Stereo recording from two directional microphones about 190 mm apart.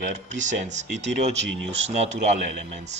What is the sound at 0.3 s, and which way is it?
Speech, 40° right (ahead or behind).